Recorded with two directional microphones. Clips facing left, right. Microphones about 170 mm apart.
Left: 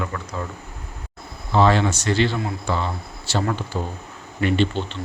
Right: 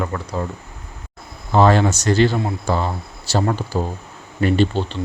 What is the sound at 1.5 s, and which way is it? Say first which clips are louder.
Speech: right 3 dB; 45° right (ahead or behind).